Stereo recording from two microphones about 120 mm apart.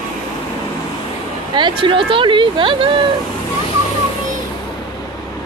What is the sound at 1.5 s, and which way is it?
Speech, 40° right (ahead or behind).